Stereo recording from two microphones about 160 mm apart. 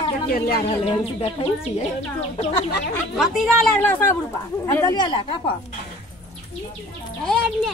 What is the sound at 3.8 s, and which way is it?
Speech, 10° left (ahead or behind).